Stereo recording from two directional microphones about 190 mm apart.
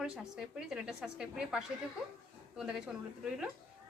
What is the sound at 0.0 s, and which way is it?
A woman's voice, 5° right (ahead or behind).